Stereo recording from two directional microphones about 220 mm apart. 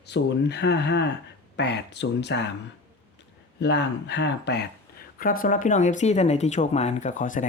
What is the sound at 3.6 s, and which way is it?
Speech, 50° left (ahead or behind).